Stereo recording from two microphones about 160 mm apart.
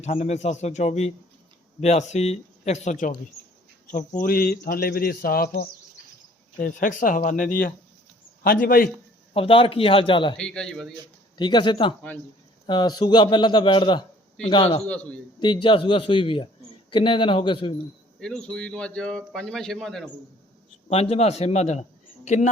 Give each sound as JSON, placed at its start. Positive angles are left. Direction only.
{"t": 0.0, "sound": "speech", "side_deg": 45}
{"t": 6.6, "sound": "speech", "side_deg": 55}
{"t": 9.3, "sound": "a man's voice", "side_deg": 35}
{"t": 10.3, "sound": "speech", "side_deg": 5}
{"t": 11.3, "sound": "a man's voice", "side_deg": 30}
{"t": 14.8, "sound": "a man's voice", "side_deg": 10}
{"t": 15.6, "sound": "a man's voice", "side_deg": 30}
{"t": 18.2, "sound": "speech", "side_deg": 5}
{"t": 20.9, "sound": "a man's voice", "side_deg": 40}